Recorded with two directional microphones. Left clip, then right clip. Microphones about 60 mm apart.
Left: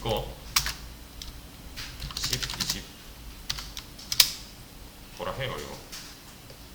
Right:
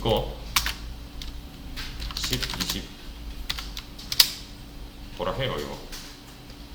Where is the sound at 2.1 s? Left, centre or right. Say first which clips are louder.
Right 2 dB; centre.